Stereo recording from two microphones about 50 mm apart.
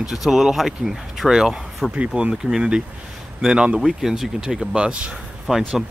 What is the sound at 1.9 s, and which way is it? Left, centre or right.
Speech, right.